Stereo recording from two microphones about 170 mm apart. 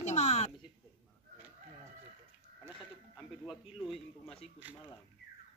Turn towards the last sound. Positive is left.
turn(degrees=-10)  # may be behind; listen again after turning